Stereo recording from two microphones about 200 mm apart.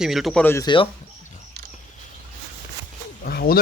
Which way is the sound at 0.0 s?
Centre (ahead or behind).